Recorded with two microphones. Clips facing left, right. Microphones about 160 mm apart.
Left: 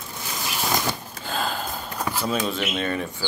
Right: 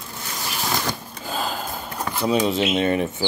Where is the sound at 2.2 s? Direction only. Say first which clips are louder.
Right 8 dB; 20° right (ahead or behind).